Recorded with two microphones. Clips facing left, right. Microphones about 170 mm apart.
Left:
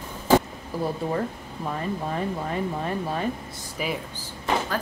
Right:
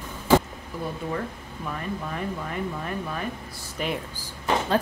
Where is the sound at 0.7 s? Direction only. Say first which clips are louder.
Left 4 dB; 35° left (ahead or behind).